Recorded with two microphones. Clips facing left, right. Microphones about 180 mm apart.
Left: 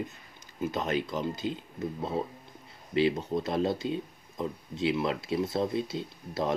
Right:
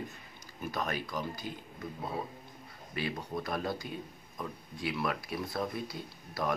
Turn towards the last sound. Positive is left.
turn(degrees=25)  # may be behind; listen again after turning